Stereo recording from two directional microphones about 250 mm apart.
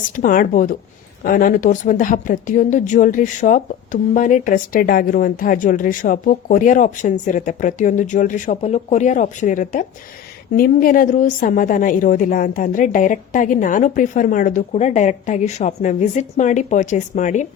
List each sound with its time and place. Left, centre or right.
0.2 s speech: left